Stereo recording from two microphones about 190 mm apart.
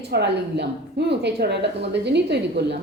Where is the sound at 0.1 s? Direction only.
60° right (ahead or behind).